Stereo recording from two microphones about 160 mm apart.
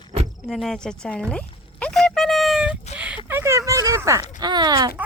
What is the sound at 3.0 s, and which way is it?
Speech, 10° right (ahead or behind).